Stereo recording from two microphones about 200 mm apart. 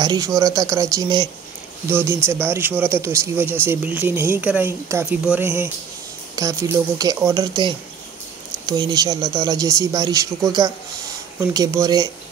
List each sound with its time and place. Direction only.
0.0 s speech: 20° right (ahead or behind)